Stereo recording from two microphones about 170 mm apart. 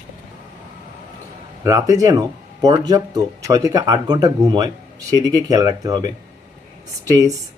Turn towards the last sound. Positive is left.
turn(degrees=-20)  # may be behind; listen again after turning